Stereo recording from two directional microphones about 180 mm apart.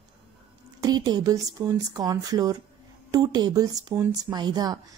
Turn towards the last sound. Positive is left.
turn(degrees=-20)  # may be behind; listen again after turning